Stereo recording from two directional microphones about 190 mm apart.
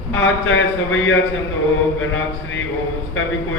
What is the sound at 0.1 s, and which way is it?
A man's voice, 90° left.